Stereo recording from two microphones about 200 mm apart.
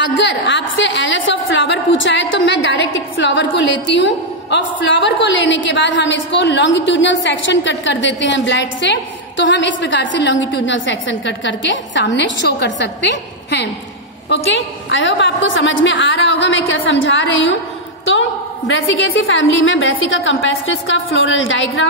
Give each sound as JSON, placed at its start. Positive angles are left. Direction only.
{"t": 0.2, "sound": "a woman's voice", "side_deg": 65}
{"t": 18.7, "sound": "a woman's voice", "side_deg": 75}